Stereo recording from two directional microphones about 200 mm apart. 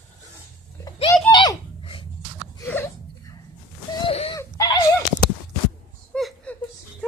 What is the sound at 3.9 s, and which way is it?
Wheeze, 30° left (ahead or behind).